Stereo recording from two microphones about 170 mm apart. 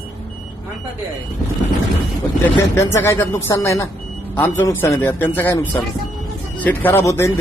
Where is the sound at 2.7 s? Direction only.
15° left (ahead or behind).